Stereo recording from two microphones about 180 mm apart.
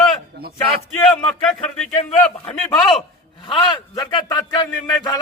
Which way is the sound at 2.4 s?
5° left (ahead or behind).